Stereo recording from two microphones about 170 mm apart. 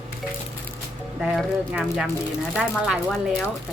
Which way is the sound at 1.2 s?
Centre (ahead or behind).